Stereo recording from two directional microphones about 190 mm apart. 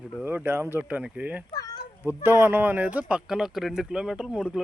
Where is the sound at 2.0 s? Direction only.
10° right (ahead or behind).